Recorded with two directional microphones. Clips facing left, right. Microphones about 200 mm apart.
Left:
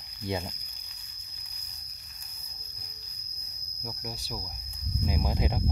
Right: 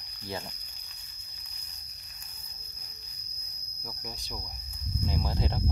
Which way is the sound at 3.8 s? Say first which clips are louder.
Left 4 dB; 10° left (ahead or behind).